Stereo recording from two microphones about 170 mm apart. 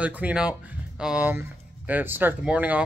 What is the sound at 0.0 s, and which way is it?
Speech, 5° right (ahead or behind).